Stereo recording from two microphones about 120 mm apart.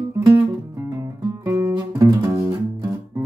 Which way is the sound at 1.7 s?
25° right (ahead or behind).